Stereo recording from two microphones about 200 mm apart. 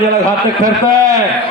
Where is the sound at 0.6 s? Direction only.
15° right (ahead or behind).